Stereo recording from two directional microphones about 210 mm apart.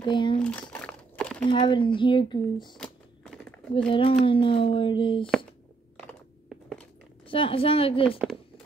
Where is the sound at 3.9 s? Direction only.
25° left (ahead or behind).